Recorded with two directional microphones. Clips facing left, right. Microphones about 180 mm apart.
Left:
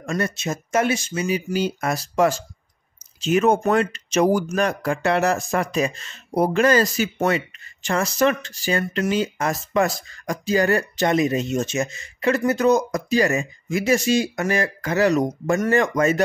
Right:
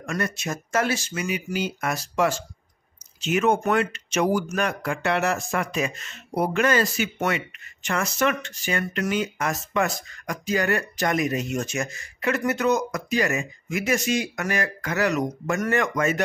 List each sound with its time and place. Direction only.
0.0 s speech: 25° left (ahead or behind)